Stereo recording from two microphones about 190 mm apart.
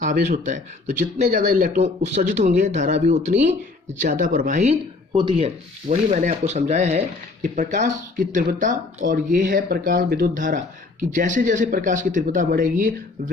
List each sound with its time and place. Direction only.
0.0 s speech: 40° right (ahead or behind)
5.1 s speech: 25° right (ahead or behind)
5.9 s speech: 40° right (ahead or behind)